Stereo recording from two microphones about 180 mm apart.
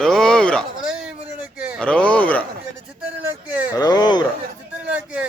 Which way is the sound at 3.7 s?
20° left (ahead or behind).